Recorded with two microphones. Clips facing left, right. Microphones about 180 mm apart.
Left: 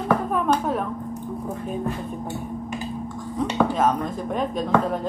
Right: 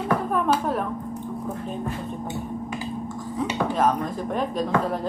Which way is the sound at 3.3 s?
Centre (ahead or behind).